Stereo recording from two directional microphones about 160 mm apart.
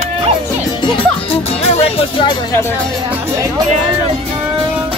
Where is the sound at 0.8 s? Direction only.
40° left (ahead or behind).